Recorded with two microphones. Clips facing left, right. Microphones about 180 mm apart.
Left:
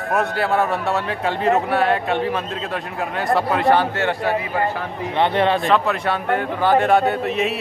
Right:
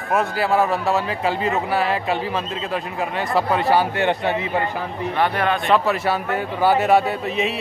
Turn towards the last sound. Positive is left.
turn(degrees=0)  # may be behind; listen again after turning